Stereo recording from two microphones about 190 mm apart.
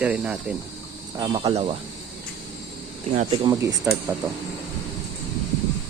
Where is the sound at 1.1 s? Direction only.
20° right (ahead or behind).